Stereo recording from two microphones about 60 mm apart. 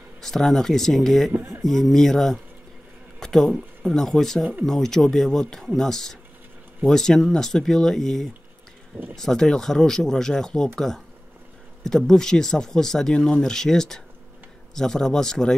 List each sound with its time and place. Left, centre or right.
0.2 s speech: centre
1.3 s speech: right
1.6 s speech: centre
3.2 s a sound: centre
3.8 s speech: centre
11.8 s speech: centre